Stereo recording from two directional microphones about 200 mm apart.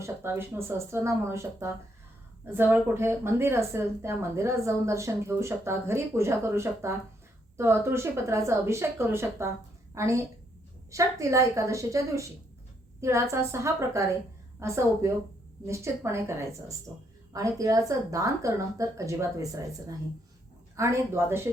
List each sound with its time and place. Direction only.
0.0 s a woman's voice: 10° right (ahead or behind)